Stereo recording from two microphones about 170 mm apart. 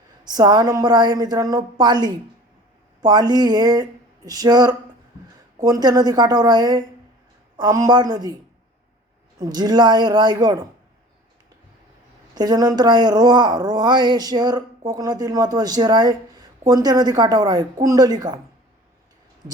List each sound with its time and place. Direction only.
0.3 s a woman's voice: 25° right (ahead or behind)
9.4 s a woman's voice: 25° right (ahead or behind)
12.3 s a woman's voice: 25° right (ahead or behind)